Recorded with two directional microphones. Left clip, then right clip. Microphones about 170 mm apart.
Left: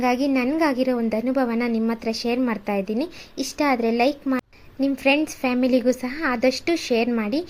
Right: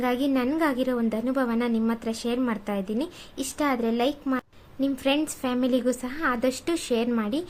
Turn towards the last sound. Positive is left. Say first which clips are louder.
# left 4 dB
turn(degrees=15)  # may be behind; listen again after turning